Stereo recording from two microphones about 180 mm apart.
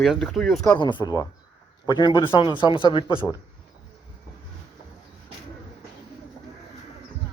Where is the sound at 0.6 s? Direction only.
25° left (ahead or behind).